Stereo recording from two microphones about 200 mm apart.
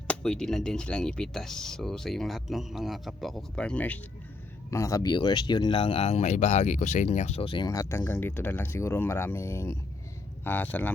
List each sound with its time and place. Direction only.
0.1 s speech: 5° left (ahead or behind)